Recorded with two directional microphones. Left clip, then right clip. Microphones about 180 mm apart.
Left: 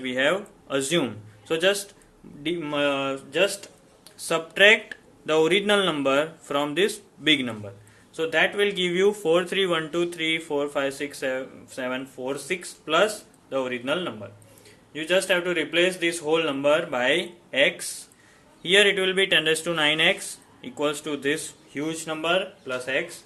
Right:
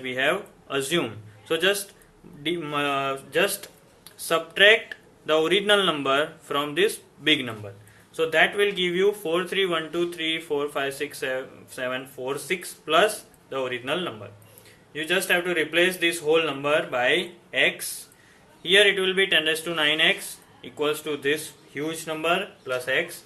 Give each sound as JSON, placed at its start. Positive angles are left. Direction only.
{"t": 0.0, "sound": "a man's voice", "side_deg": 30}
{"t": 4.3, "sound": "speech", "side_deg": 25}
{"t": 8.1, "sound": "speech", "side_deg": 15}